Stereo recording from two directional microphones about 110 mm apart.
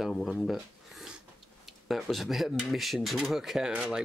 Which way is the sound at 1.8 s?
Centre (ahead or behind).